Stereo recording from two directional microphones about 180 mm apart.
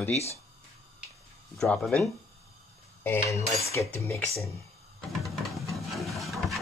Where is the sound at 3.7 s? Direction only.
10° left (ahead or behind).